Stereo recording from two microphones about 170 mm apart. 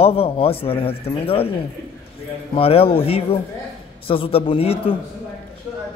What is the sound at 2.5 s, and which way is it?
Speech, 35° left (ahead or behind).